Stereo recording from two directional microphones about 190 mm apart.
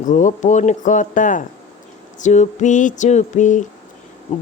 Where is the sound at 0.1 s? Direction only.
40° left (ahead or behind).